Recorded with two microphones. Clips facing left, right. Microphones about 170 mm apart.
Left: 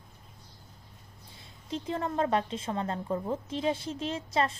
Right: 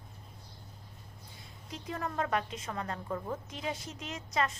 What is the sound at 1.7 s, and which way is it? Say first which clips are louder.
A woman's voice: left 6 dB; 25° left (ahead or behind).